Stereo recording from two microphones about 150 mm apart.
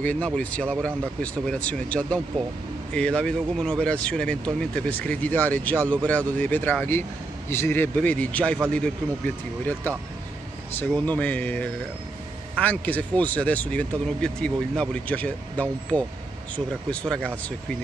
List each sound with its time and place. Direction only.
0.0 s speech: 10° left (ahead or behind)
10.8 s speech: 10° left (ahead or behind)